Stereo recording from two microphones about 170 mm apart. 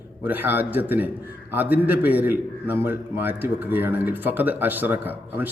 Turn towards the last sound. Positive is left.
turn(degrees=-10)  # may be behind; listen again after turning